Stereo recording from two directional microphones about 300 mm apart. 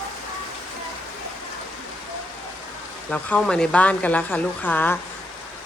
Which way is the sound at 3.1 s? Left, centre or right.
Centre.